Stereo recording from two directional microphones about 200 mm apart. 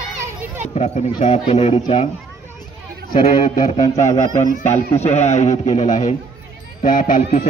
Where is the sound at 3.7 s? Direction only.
35° left (ahead or behind).